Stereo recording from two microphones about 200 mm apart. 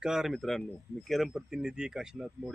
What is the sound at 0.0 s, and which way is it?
Speech, 5° right (ahead or behind).